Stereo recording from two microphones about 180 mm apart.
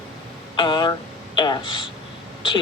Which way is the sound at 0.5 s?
25° left (ahead or behind).